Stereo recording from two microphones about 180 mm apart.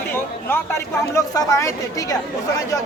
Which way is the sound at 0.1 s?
10° left (ahead or behind).